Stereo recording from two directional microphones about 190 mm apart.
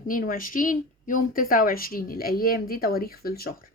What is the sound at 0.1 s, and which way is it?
Speech, 45° left (ahead or behind).